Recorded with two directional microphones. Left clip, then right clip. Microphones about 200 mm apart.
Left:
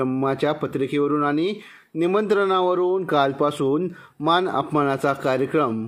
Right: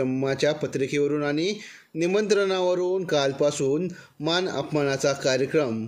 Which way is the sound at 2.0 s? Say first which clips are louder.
Left 2 dB; 5° right (ahead or behind).